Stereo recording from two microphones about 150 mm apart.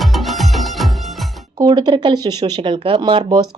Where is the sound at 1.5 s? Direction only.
25° right (ahead or behind).